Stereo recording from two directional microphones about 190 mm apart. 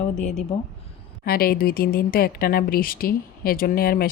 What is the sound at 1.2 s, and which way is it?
A woman's voice, 50° left (ahead or behind).